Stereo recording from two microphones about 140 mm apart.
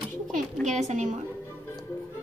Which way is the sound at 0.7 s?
55° right (ahead or behind).